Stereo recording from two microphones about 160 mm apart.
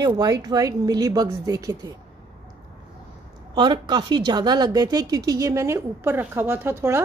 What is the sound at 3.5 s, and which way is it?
A woman's voice, 30° right (ahead or behind).